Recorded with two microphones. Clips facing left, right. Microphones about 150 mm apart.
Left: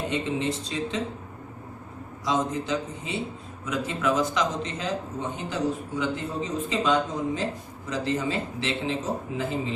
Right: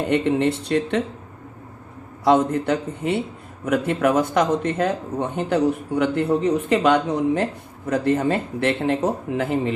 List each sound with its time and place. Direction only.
0.1 s speech: 60° right (ahead or behind)
2.2 s speech: 60° right (ahead or behind)
7.9 s speech: 55° right (ahead or behind)